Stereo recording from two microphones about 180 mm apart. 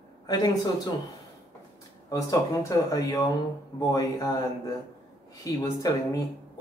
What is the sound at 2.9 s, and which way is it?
Speech, 20° left (ahead or behind).